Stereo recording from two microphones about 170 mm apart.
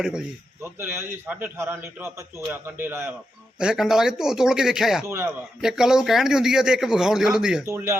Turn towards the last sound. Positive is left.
turn(degrees=-15)  # may be behind; listen again after turning